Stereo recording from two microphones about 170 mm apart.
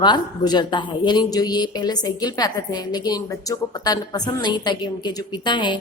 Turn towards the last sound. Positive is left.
turn(degrees=25)  # may be behind; listen again after turning